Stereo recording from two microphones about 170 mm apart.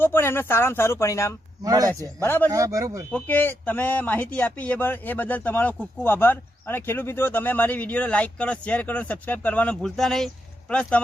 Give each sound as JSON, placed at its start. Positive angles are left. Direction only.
{"t": 0.0, "sound": "speech", "side_deg": 15}
{"t": 1.6, "sound": "speech", "side_deg": -20}
{"t": 2.2, "sound": "speech", "side_deg": 10}
{"t": 2.5, "sound": "speech", "side_deg": -20}
{"t": 3.1, "sound": "speech", "side_deg": 10}